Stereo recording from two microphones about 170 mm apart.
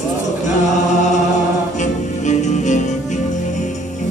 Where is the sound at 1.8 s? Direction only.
45° left (ahead or behind).